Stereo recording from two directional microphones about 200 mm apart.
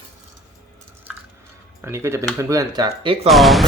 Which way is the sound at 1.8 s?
15° right (ahead or behind).